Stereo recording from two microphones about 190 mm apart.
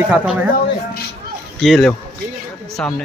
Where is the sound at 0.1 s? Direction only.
5° right (ahead or behind).